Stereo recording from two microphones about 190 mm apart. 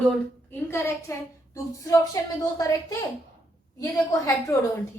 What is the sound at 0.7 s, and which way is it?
A woman's voice, 15° left (ahead or behind).